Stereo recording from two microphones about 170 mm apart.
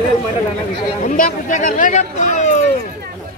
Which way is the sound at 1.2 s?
50° left (ahead or behind).